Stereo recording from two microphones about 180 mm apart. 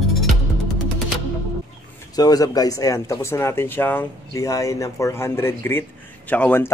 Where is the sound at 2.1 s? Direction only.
20° left (ahead or behind).